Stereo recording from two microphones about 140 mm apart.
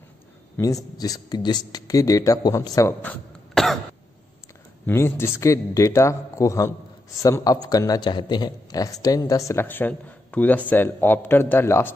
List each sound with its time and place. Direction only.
0.9 s a man's voice: 25° left (ahead or behind)
3.0 s a sound: 10° left (ahead or behind)
4.8 s a man's voice: 15° left (ahead or behind)